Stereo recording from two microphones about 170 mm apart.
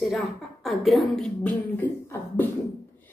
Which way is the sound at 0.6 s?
Centre (ahead or behind).